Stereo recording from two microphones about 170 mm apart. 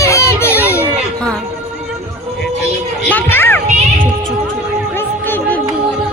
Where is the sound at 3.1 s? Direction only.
10° left (ahead or behind).